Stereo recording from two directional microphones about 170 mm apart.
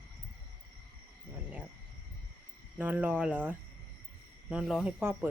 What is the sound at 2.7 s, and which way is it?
Speech, 10° right (ahead or behind).